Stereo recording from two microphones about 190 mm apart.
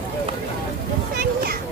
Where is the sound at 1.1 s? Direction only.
50° right (ahead or behind).